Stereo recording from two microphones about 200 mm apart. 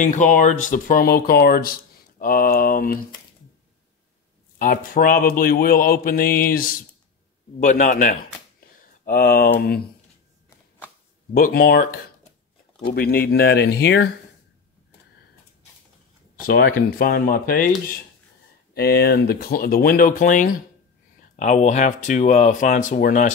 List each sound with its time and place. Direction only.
0.0 s speech: 40° left (ahead or behind)
4.6 s speech: 45° left (ahead or behind)
11.3 s speech: 45° left (ahead or behind)
16.3 s speech: 45° left (ahead or behind)